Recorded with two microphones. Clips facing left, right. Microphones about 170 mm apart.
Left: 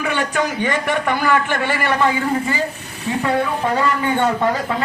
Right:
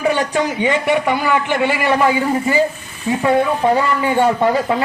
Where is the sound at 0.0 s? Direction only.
35° right (ahead or behind).